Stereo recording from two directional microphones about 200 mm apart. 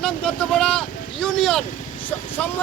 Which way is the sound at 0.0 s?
5° left (ahead or behind).